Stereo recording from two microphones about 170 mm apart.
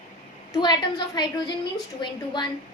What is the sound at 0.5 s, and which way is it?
A woman's voice, 25° left (ahead or behind).